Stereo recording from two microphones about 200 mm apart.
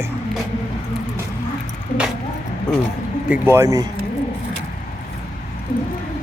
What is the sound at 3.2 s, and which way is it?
Speech, 10° right (ahead or behind).